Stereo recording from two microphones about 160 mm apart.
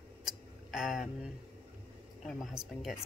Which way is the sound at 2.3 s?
Centre (ahead or behind).